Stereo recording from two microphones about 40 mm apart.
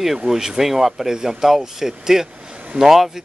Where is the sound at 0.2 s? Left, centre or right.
Centre.